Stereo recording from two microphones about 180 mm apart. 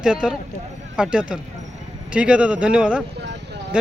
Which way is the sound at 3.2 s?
70° right (ahead or behind).